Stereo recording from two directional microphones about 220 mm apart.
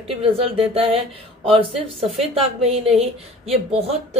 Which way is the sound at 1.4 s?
25° right (ahead or behind).